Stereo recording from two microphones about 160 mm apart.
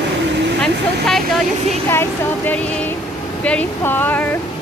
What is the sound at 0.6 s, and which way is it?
Speech, 5° left (ahead or behind).